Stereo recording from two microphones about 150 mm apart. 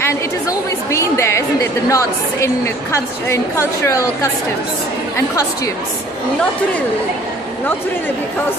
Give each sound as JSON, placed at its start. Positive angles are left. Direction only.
{"t": 0.0, "sound": "a woman's voice", "side_deg": 20}